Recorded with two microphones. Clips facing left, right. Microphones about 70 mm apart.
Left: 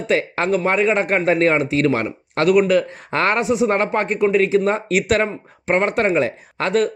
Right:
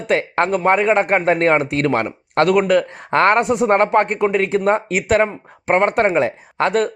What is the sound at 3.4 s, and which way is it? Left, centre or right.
Speech, right.